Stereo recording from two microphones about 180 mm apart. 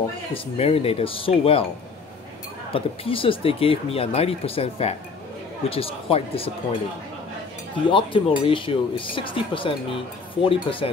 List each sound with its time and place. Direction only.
0.3 s speech: 35° left (ahead or behind)
2.7 s speech: 30° left (ahead or behind)
7.9 s speech: 30° left (ahead or behind)